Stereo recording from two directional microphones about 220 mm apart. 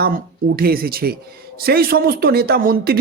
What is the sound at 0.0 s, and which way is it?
Speech, 45° right (ahead or behind).